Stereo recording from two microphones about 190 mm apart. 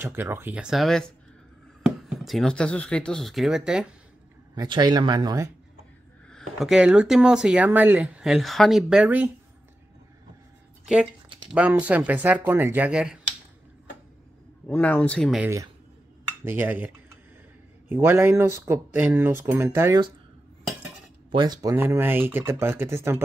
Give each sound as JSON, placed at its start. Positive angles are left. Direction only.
{"t": 0.0, "sound": "speech", "side_deg": -10}
{"t": 4.6, "sound": "speech", "side_deg": -20}
{"t": 6.3, "sound": "speech", "side_deg": 0}
{"t": 11.5, "sound": "speech", "side_deg": -5}
{"t": 14.7, "sound": "speech", "side_deg": 5}
{"t": 15.4, "sound": "speech", "side_deg": -15}
{"t": 21.3, "sound": "speech", "side_deg": -20}